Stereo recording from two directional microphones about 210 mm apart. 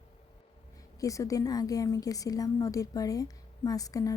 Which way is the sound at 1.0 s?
15° left (ahead or behind).